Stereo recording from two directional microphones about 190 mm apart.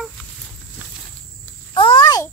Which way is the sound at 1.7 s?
25° left (ahead or behind).